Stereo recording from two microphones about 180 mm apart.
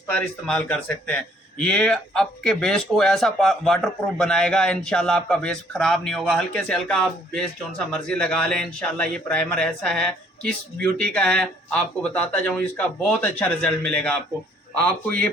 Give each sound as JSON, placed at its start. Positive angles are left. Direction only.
{"t": 0.1, "sound": "a man's voice", "side_deg": 5}